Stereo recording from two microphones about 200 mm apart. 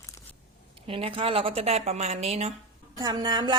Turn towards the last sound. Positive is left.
turn(degrees=-20)  # may be behind; listen again after turning